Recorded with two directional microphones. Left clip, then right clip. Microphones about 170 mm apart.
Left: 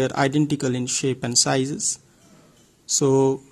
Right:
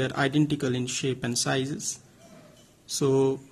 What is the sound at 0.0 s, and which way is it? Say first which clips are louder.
A man's voice: left 4 dB; 35° left (ahead or behind).